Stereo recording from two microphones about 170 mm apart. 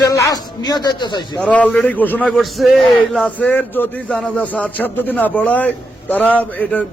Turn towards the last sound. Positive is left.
turn(degrees=10)  # may be behind; listen again after turning